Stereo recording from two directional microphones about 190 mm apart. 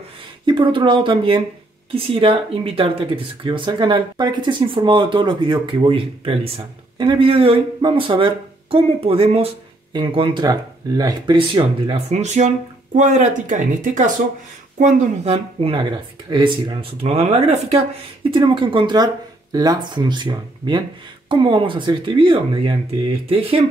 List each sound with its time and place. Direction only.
0.5 s speech: 25° right (ahead or behind)